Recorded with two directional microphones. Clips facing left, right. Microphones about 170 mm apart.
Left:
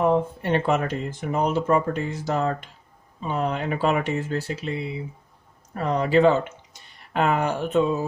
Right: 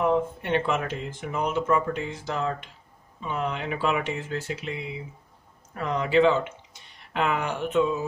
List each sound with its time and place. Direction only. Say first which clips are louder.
0.0 s speech: left 3 dB; 35° left (ahead or behind)